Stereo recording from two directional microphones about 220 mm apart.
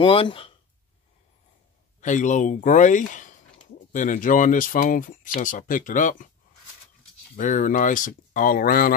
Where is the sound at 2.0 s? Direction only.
35° left (ahead or behind).